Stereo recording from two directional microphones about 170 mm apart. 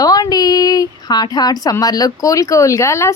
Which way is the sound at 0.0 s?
20° left (ahead or behind).